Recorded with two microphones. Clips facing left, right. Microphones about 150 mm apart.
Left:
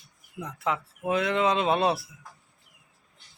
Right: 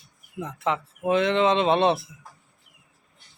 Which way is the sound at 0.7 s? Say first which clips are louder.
Right 4 dB; centre (ahead or behind).